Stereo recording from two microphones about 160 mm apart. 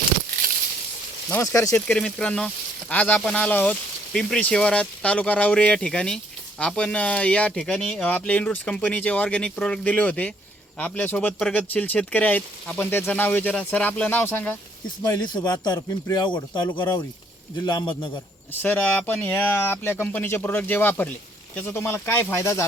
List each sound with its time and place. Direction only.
1.3 s speech: 20° left (ahead or behind)
1.9 s speech: 5° left (ahead or behind); by 18.2 s 30° left (ahead or behind)
18.6 s speech: 10° left (ahead or behind)